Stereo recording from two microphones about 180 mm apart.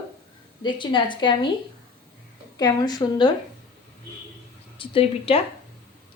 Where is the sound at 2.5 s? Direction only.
20° left (ahead or behind).